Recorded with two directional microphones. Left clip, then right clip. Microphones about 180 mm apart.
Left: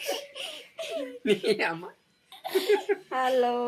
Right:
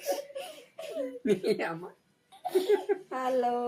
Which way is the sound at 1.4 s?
25° right (ahead or behind).